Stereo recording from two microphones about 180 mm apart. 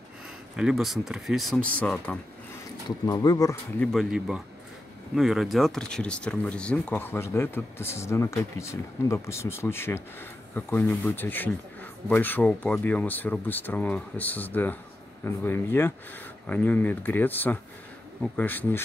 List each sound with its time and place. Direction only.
0.6 s speech: centre (ahead or behind)
3.1 s speech: 20° left (ahead or behind)
3.8 s speech: centre (ahead or behind)